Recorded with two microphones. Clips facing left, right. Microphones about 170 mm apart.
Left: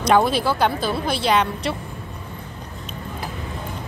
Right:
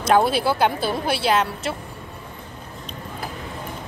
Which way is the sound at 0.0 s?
5° right (ahead or behind).